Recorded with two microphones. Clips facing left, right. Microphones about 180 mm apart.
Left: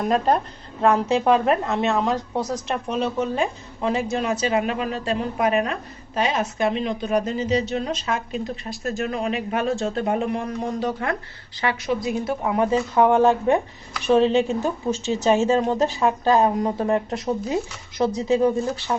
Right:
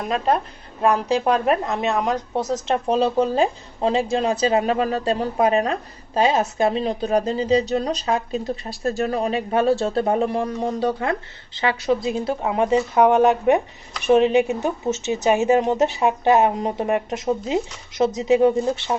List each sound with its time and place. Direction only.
1.5 s speech: 15° right (ahead or behind)
2.8 s a woman's voice: 35° right (ahead or behind)